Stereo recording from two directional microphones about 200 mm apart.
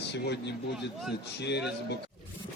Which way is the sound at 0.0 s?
60° left (ahead or behind).